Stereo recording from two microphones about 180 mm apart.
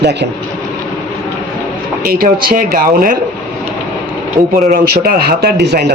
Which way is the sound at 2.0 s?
55° right (ahead or behind).